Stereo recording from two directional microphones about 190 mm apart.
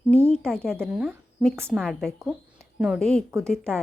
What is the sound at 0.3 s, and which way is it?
A woman's voice, 5° left (ahead or behind).